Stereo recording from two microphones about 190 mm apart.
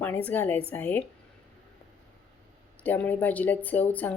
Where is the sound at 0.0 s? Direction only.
10° left (ahead or behind).